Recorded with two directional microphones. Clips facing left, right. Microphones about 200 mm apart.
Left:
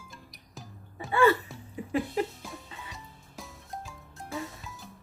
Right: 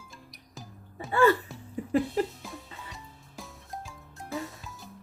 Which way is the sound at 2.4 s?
Centre (ahead or behind).